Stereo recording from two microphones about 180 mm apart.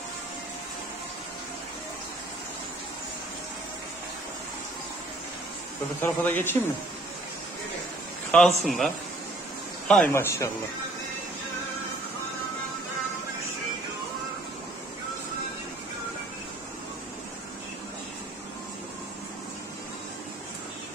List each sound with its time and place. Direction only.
5.9 s speech: 10° left (ahead or behind)
8.3 s speech: centre (ahead or behind)
10.1 s speech: 15° left (ahead or behind)